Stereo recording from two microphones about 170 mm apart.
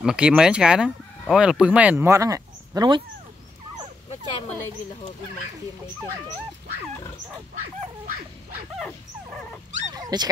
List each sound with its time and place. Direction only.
0.0 s speech: 5° right (ahead or behind); by 3.0 s 25° right (ahead or behind)
4.1 s a sound: 30° left (ahead or behind)
9.9 s dog: 20° right (ahead or behind)